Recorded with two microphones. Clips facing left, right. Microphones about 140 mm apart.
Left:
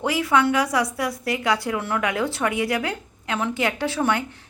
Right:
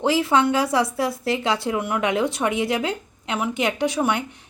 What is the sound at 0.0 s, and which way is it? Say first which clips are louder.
A woman's voice: right 2 dB; 25° right (ahead or behind).